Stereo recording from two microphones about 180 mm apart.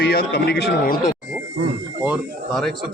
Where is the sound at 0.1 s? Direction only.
70° left (ahead or behind).